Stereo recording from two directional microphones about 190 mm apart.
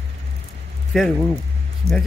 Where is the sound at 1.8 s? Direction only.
90° left.